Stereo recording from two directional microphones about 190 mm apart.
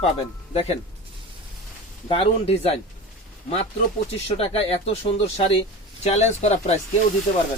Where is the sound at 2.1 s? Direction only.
30° left (ahead or behind).